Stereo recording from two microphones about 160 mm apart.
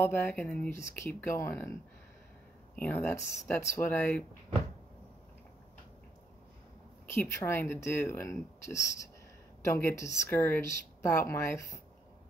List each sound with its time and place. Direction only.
0.0 s speech: 15° left (ahead or behind)
7.2 s speech: 15° left (ahead or behind)